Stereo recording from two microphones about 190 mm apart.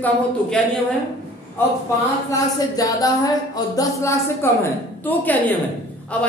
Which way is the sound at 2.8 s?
20° left (ahead or behind).